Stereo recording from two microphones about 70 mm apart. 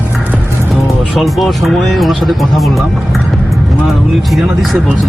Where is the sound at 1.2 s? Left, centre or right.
Centre.